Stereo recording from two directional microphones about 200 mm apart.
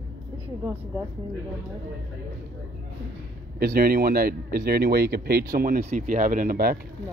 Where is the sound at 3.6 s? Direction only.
45° right (ahead or behind).